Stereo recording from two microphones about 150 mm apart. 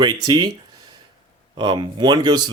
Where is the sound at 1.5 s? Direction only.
30° right (ahead or behind).